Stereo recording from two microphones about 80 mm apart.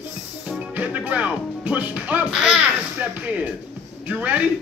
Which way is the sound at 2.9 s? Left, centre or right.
Right.